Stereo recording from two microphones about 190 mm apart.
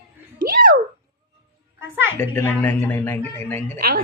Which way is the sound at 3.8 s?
50° right (ahead or behind).